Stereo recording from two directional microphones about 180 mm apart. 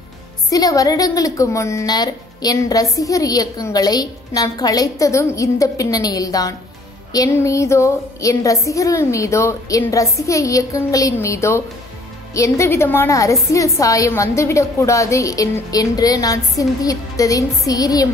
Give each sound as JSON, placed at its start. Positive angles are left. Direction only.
{"t": 0.5, "sound": "a woman's voice", "side_deg": 20}